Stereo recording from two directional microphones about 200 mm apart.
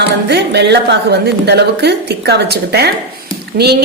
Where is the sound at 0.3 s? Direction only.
55° right (ahead or behind).